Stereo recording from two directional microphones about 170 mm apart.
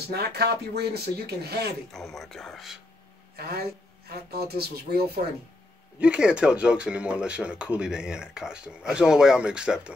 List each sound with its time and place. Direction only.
0.1 s speech: 70° right (ahead or behind)
1.9 s speech: centre (ahead or behind)
3.3 s speech: 65° right (ahead or behind)
5.9 s speech: 5° right (ahead or behind)